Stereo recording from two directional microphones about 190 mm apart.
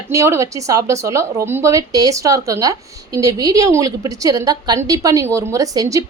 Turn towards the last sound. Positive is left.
turn(degrees=-20)  # may be behind; listen again after turning